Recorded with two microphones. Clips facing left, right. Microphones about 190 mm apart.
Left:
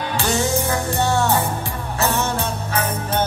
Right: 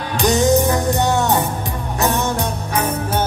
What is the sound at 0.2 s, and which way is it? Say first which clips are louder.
Music: right 8 dB; 15° right (ahead or behind).